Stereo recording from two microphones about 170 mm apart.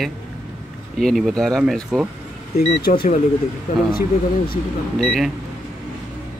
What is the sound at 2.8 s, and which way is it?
Speech, 65° left (ahead or behind).